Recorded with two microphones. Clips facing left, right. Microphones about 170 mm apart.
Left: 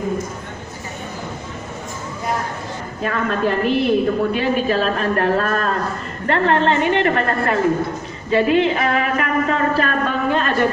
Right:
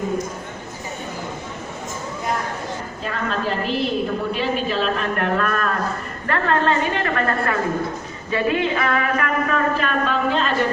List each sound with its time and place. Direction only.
3.0 s a woman's voice: 55° left (ahead or behind)
4.4 s speech: 45° left (ahead or behind)
6.2 s a sound: 25° left (ahead or behind)
9.8 s speech: 50° left (ahead or behind)